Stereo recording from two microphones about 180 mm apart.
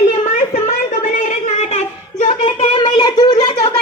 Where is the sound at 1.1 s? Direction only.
40° left (ahead or behind).